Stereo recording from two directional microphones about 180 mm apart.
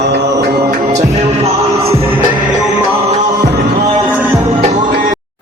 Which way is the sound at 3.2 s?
20° right (ahead or behind).